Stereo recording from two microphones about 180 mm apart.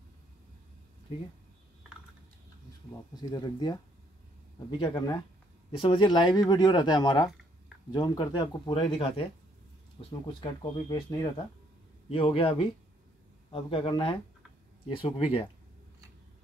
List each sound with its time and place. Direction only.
3.2 s speech: 25° left (ahead or behind)